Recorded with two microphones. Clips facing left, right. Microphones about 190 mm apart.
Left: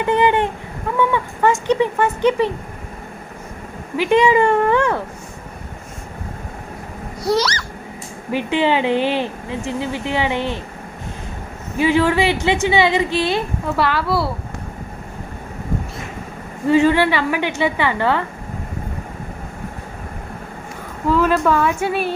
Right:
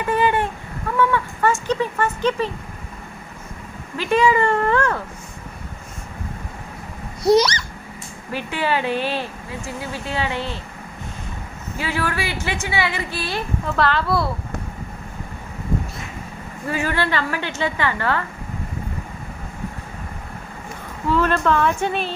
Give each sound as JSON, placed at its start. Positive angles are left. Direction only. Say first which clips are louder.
{"t": 0.0, "sound": "a woman's voice", "louder": "left 3 dB", "side_deg": 20}
{"t": 3.9, "sound": "a woman's voice", "louder": "left 4 dB", "side_deg": 15}
{"t": 7.2, "sound": "a sound", "louder": "right 4 dB", "side_deg": -20}
{"t": 8.3, "sound": "speech", "louder": "left 6 dB", "side_deg": 20}
{"t": 11.8, "sound": "speech", "louder": "left 9 dB", "side_deg": 20}
{"t": 13.7, "sound": "speech", "louder": "left 1 dB", "side_deg": 5}
{"t": 16.6, "sound": "a woman's voice", "louder": "left 9 dB", "side_deg": 20}
{"t": 21.1, "sound": "a woman's voice", "louder": "left 3 dB", "side_deg": 5}